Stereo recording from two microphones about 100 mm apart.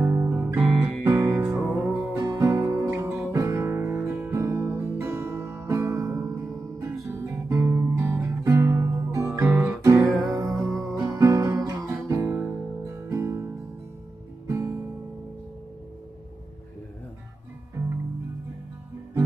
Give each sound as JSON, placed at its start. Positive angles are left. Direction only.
{"t": 0.1, "sound": "music", "side_deg": -20}
{"t": 1.0, "sound": "music", "side_deg": -35}
{"t": 1.3, "sound": "music", "side_deg": -25}
{"t": 2.1, "sound": "music", "side_deg": -35}
{"t": 3.3, "sound": "guitar", "side_deg": -25}
{"t": 3.9, "sound": "music", "side_deg": -20}
{"t": 7.2, "sound": "guitar", "side_deg": -30}
{"t": 8.5, "sound": "music", "side_deg": -25}
{"t": 9.3, "sound": "guitar", "side_deg": -25}
{"t": 9.8, "sound": "music", "side_deg": -35}
{"t": 10.6, "sound": "music", "side_deg": 5}
{"t": 11.1, "sound": "guitar", "side_deg": -35}
{"t": 14.5, "sound": "music", "side_deg": -30}
{"t": 17.8, "sound": "music", "side_deg": -35}